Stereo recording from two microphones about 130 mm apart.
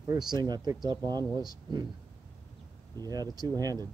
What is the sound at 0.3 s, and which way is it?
Speech, 30° right (ahead or behind).